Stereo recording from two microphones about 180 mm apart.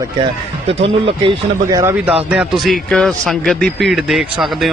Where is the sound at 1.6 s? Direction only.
15° right (ahead or behind).